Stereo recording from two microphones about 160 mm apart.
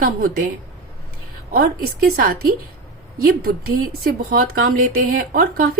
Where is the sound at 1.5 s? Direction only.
70° right (ahead or behind).